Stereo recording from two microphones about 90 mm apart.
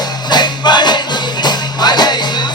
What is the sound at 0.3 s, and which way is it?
Music, 55° left (ahead or behind).